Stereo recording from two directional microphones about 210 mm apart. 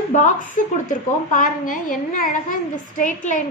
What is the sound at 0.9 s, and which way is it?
A woman's voice, 40° left (ahead or behind).